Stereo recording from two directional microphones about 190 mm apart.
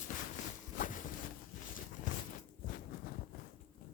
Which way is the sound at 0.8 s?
45° left (ahead or behind).